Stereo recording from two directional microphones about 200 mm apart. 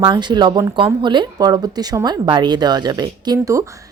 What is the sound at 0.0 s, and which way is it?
Speech, 20° right (ahead or behind).